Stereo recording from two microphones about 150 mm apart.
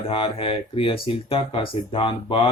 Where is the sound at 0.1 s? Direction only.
40° left (ahead or behind).